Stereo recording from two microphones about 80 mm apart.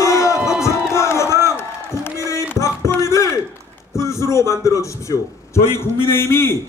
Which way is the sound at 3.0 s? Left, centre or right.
Left.